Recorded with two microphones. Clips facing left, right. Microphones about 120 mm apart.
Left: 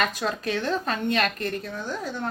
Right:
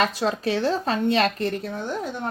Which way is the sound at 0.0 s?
30° right (ahead or behind).